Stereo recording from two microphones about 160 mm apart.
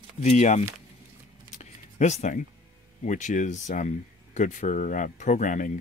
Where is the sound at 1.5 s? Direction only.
50° left (ahead or behind).